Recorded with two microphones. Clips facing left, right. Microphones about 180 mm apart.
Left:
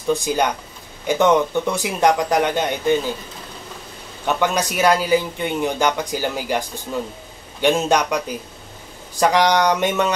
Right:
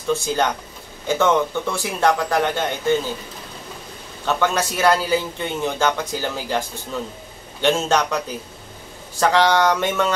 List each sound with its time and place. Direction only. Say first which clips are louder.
0.1 s speech: left 1 dB; 15° left (ahead or behind)
4.3 s speech: left 1 dB; 15° left (ahead or behind)
9.2 s speech: even; 15° left (ahead or behind)